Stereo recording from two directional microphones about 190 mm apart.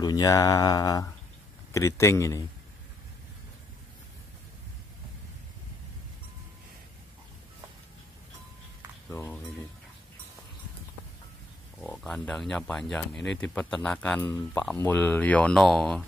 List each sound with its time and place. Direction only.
0.0 s a man's voice: 20° left (ahead or behind)
9.1 s speech: 10° left (ahead or behind)
11.8 s speech: 5° left (ahead or behind)